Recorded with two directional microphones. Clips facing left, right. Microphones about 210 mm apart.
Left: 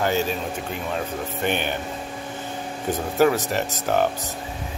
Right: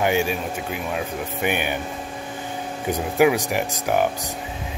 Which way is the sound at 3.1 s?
10° right (ahead or behind).